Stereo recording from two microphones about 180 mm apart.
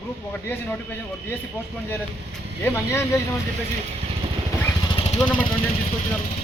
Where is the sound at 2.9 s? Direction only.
15° left (ahead or behind).